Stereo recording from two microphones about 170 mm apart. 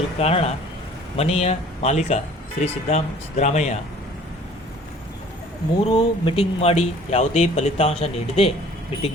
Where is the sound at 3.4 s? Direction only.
45° left (ahead or behind).